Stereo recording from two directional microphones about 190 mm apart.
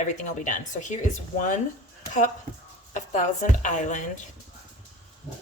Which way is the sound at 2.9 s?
40° left (ahead or behind).